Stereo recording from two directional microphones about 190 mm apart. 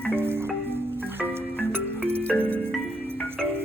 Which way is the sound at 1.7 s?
10° right (ahead or behind).